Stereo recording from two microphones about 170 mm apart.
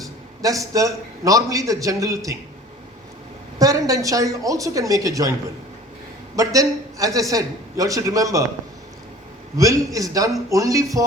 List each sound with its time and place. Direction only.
0.4 s a man's voice: 20° right (ahead or behind)
3.6 s a man's voice: 20° right (ahead or behind)
6.3 s a man's voice: 20° right (ahead or behind)
9.6 s a man's voice: 20° right (ahead or behind)